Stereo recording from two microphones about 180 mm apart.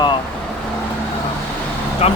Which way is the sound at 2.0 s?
35° left (ahead or behind).